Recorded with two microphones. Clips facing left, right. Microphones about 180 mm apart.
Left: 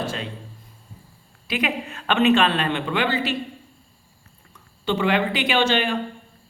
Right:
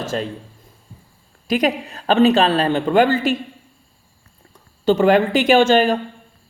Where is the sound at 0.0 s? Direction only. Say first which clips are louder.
Right 5 dB; 45° right (ahead or behind).